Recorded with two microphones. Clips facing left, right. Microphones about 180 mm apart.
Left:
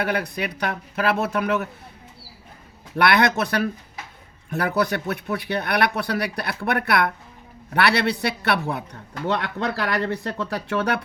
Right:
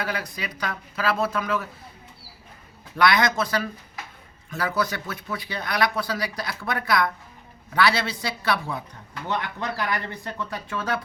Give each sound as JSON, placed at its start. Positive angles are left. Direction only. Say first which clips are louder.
{"t": 0.0, "sound": "speech", "louder": "left 6 dB", "side_deg": 60}
{"t": 2.9, "sound": "speech", "louder": "left 2 dB", "side_deg": 60}